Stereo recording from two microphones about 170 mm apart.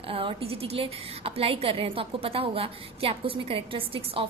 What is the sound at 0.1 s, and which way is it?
A woman's voice, 35° right (ahead or behind).